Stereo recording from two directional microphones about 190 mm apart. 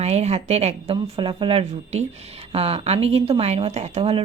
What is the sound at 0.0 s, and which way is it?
Speech, 35° right (ahead or behind).